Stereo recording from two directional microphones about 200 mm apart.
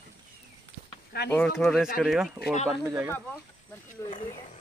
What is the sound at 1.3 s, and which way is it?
Speech, 5° left (ahead or behind).